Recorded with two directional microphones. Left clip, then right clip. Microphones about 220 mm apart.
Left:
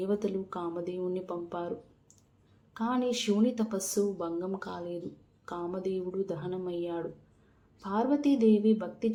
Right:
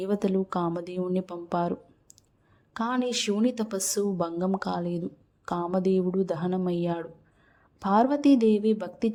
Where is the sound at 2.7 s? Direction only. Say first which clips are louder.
Right 3 dB; 40° right (ahead or behind).